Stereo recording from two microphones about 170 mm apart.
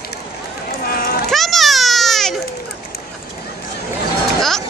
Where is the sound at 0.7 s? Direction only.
60° left (ahead or behind).